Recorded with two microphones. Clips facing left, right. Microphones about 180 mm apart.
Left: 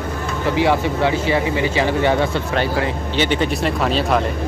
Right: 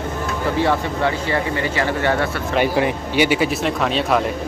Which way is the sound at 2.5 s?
15° right (ahead or behind).